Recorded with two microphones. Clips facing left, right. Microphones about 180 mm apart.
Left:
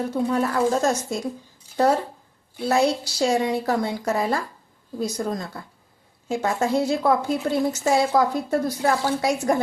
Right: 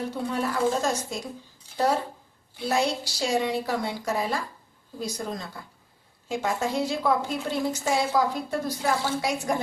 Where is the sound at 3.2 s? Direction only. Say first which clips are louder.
Left 4 dB; 45° left (ahead or behind).